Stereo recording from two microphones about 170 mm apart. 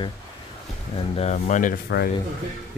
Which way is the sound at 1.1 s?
40° left (ahead or behind).